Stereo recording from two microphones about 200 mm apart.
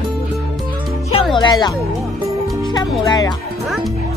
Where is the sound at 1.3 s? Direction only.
20° left (ahead or behind).